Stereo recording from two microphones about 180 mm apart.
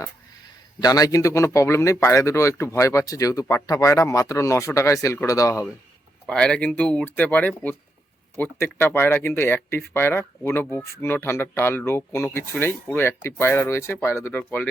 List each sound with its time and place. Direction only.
0.8 s a man's voice: 20° left (ahead or behind)
6.2 s speech: 5° left (ahead or behind)